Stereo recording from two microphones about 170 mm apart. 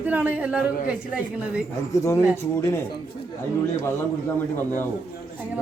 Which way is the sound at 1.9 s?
20° left (ahead or behind).